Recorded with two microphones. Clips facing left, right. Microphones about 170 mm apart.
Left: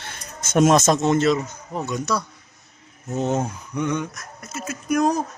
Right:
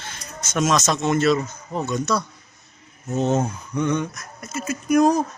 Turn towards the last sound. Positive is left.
turn(degrees=0)  # may be behind; listen again after turning